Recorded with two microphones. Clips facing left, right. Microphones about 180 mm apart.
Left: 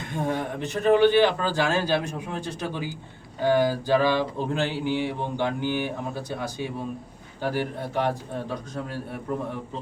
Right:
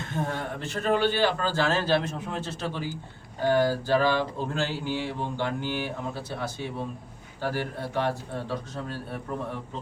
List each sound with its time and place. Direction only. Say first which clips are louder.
0.0 s a man's voice: left 3 dB; 15° left (ahead or behind)
7.4 s a man's voice: left 3 dB; 15° left (ahead or behind)